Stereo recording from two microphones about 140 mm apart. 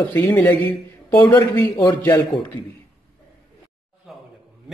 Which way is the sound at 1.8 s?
20° left (ahead or behind).